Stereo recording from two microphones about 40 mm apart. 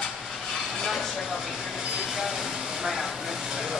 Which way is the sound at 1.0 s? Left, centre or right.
Centre.